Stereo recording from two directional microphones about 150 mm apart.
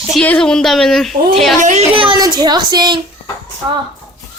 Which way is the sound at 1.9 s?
35° right (ahead or behind).